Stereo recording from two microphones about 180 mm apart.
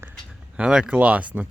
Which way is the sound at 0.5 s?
5° right (ahead or behind).